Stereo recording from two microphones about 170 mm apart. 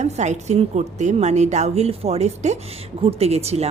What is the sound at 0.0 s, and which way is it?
A woman's voice, 45° right (ahead or behind).